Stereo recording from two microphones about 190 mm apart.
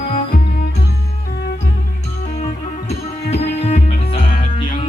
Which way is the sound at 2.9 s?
35° left (ahead or behind).